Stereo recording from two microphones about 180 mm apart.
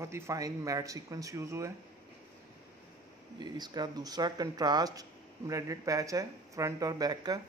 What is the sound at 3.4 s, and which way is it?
Speech, 25° right (ahead or behind).